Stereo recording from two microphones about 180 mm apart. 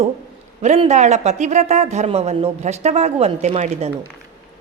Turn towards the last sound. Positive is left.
turn(degrees=-35)  # may be behind; listen again after turning